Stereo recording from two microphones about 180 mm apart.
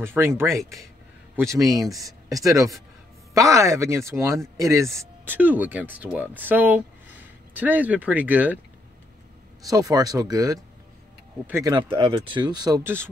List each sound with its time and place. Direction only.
0.0 s speech: 15° right (ahead or behind)
9.7 s speech: 20° right (ahead or behind)
11.7 s speech: 30° right (ahead or behind)
12.8 s speech: 15° right (ahead or behind)